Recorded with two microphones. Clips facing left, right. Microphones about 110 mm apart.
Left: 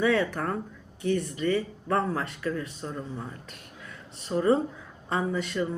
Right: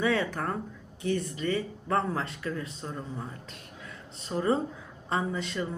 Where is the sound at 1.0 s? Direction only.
35° right (ahead or behind).